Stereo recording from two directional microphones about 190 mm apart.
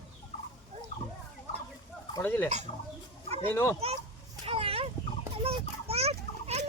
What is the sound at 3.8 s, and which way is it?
Speech, 30° right (ahead or behind).